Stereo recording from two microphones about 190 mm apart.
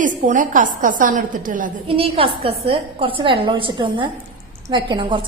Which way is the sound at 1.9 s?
30° right (ahead or behind).